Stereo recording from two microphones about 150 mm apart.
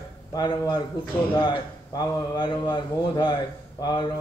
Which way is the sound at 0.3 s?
30° left (ahead or behind).